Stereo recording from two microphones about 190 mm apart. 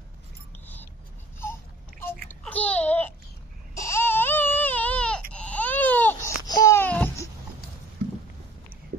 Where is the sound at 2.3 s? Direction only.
10° left (ahead or behind).